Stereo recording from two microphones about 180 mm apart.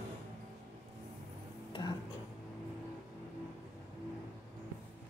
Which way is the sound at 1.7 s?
25° left (ahead or behind).